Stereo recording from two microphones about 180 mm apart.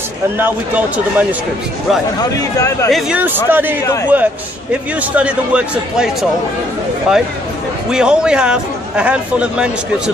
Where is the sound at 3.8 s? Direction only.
15° left (ahead or behind).